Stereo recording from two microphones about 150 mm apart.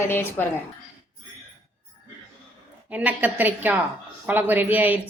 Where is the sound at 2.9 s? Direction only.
10° right (ahead or behind).